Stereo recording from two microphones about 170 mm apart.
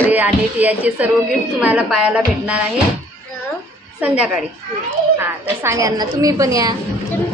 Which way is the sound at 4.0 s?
5° right (ahead or behind).